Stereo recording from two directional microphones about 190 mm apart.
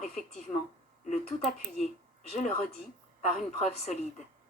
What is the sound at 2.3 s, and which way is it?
Speech, 35° left (ahead or behind).